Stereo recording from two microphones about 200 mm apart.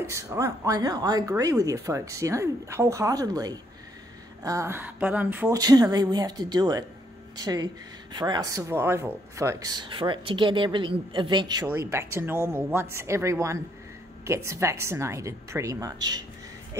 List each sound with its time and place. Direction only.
0.1 s speech: 15° right (ahead or behind)